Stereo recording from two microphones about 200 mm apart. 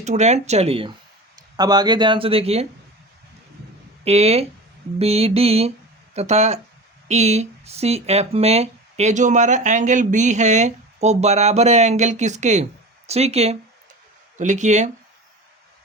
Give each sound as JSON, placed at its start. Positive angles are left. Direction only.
{"t": 0.0, "sound": "speech", "side_deg": -35}
{"t": 4.0, "sound": "speech", "side_deg": -30}